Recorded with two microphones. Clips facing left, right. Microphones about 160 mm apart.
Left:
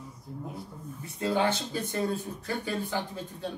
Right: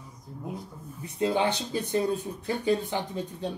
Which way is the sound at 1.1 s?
15° right (ahead or behind).